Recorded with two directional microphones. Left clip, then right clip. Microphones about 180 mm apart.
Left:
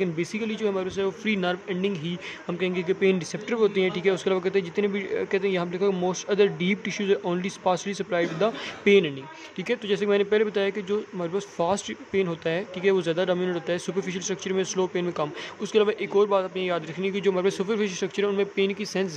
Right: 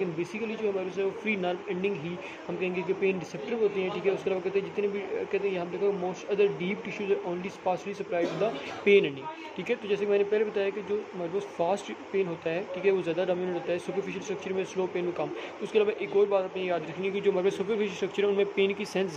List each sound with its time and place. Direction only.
0.0 s speech: 45° left (ahead or behind)